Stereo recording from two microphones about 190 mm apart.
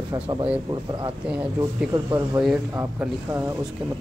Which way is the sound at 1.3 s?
5° right (ahead or behind).